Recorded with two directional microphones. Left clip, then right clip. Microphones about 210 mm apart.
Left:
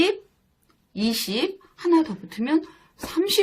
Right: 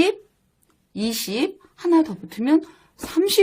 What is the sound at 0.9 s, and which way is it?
Speech, 55° right (ahead or behind).